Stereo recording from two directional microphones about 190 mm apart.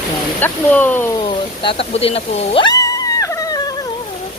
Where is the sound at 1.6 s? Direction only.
30° left (ahead or behind).